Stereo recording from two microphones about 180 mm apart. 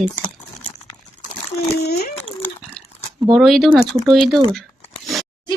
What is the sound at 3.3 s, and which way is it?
Speech, centre (ahead or behind).